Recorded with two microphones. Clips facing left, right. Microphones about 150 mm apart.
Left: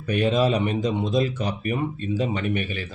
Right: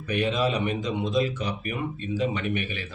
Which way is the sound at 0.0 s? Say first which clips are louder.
Left 4 dB; 40° left (ahead or behind).